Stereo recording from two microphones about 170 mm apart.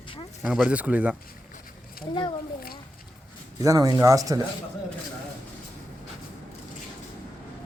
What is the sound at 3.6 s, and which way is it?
Speech, 20° right (ahead or behind).